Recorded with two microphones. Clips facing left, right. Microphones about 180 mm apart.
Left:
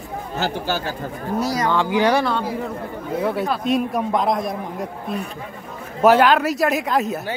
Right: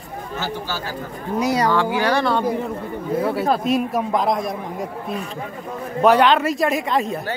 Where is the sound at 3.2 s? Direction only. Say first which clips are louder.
Right 2 dB; centre (ahead or behind).